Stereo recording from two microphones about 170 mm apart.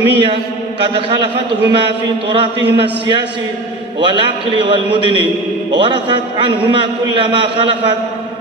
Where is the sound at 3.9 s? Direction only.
30° right (ahead or behind).